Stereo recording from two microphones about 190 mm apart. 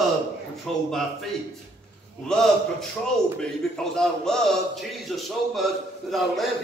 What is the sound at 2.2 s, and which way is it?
A man's voice, 5° left (ahead or behind).